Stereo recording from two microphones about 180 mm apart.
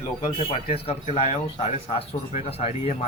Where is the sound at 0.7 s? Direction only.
35° left (ahead or behind).